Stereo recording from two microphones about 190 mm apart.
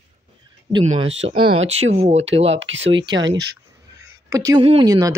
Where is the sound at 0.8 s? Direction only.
35° right (ahead or behind).